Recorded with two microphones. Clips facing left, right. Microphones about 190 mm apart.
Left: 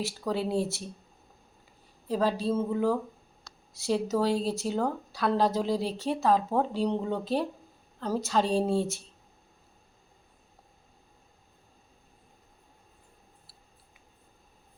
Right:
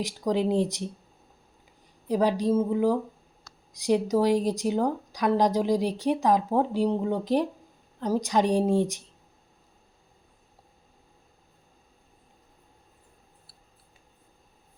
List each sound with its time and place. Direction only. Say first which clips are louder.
0.0 s a woman's voice: right 5 dB; 15° right (ahead or behind)
2.0 s a woman's voice: right 4 dB; 15° right (ahead or behind)